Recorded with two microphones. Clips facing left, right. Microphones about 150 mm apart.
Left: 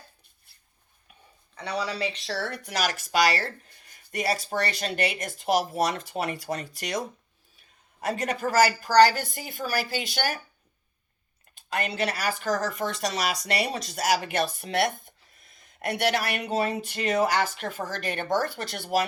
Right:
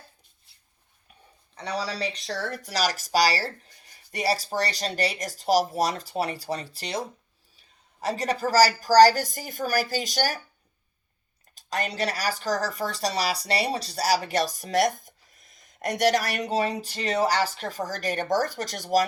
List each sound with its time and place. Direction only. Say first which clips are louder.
1.5 s speech: even; 35° right (ahead or behind)
8.0 s speech: right 1 dB; 35° right (ahead or behind)
11.5 s speech: even; 35° right (ahead or behind)